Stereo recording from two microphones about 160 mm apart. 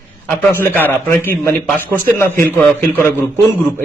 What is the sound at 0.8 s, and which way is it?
A man's voice, 15° left (ahead or behind).